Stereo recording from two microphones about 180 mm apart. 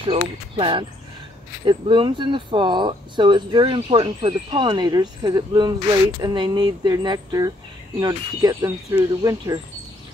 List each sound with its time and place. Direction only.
0.1 s speech: 30° right (ahead or behind)